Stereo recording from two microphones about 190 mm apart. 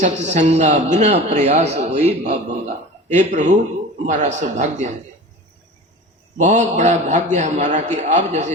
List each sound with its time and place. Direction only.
0.0 s a man's voice: 40° right (ahead or behind)
6.3 s a man's voice: 40° right (ahead or behind)